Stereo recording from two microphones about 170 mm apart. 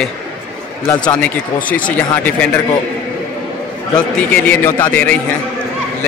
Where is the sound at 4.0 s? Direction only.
10° left (ahead or behind).